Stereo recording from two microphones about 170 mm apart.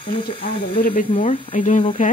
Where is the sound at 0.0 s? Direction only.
55° left (ahead or behind).